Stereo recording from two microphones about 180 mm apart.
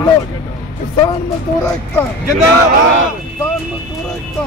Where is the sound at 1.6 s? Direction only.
15° left (ahead or behind).